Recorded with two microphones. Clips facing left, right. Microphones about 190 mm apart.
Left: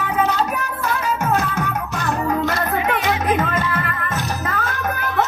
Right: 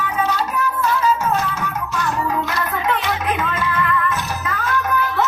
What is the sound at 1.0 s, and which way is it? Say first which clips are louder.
Music: even; 60° left (ahead or behind).